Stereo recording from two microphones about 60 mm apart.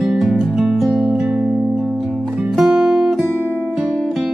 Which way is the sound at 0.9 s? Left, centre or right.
Centre.